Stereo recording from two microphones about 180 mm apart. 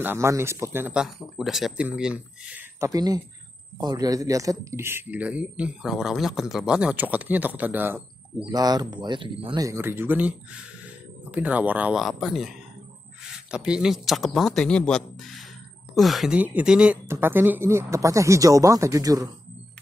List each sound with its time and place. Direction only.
0.0 s speech: 15° right (ahead or behind)
2.8 s speech: 20° right (ahead or behind)
8.5 s a man's voice: 20° right (ahead or behind)